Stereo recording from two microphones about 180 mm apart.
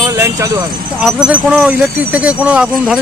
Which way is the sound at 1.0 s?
5° right (ahead or behind).